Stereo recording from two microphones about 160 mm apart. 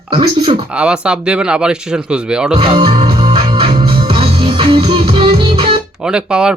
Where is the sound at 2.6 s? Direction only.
30° right (ahead or behind).